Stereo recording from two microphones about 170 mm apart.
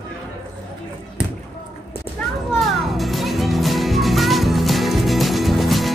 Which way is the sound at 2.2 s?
5° left (ahead or behind).